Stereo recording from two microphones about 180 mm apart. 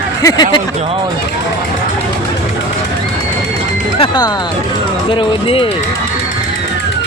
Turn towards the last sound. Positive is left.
turn(degrees=30)  # may be behind; listen again after turning